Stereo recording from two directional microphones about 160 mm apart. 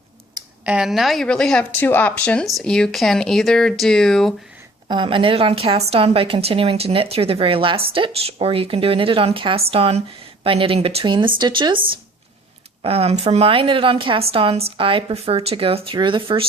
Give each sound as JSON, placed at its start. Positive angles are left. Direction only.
{"t": 0.6, "sound": "speech", "side_deg": -5}
{"t": 4.9, "sound": "a woman's voice", "side_deg": -30}
{"t": 12.8, "sound": "a woman's voice", "side_deg": -40}